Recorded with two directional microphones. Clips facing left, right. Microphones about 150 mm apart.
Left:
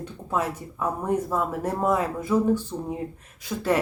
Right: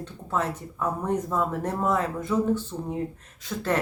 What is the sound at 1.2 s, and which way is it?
Speech, 10° left (ahead or behind).